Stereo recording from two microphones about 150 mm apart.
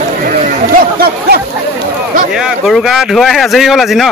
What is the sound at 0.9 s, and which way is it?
Speech, 90° right.